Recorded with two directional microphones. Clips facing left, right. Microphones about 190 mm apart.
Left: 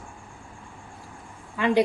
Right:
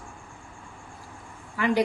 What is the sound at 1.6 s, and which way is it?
Speech, 20° left (ahead or behind).